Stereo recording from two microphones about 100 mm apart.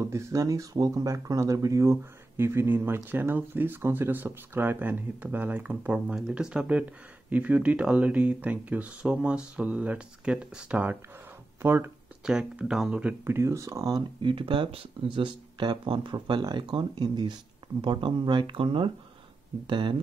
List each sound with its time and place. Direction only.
0.0 s speech: 30° right (ahead or behind); by 11.0 s 15° right (ahead or behind)
11.6 s speech: 25° right (ahead or behind)
12.3 s speech: 5° right (ahead or behind)
13.2 s speech: 25° right (ahead or behind)
14.2 s speech: 55° right (ahead or behind)